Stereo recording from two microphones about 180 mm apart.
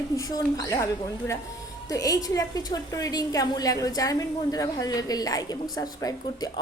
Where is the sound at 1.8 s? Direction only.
20° left (ahead or behind).